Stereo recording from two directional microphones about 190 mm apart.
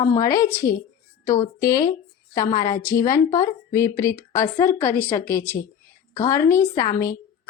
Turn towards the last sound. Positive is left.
turn(degrees=15)  # may be behind; listen again after turning